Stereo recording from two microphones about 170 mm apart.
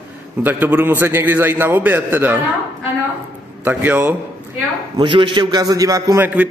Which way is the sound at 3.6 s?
10° right (ahead or behind).